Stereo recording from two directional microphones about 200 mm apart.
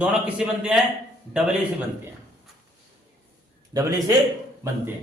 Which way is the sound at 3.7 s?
15° right (ahead or behind).